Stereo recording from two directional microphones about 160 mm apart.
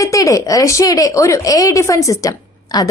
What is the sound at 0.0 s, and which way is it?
A woman's voice, 20° left (ahead or behind).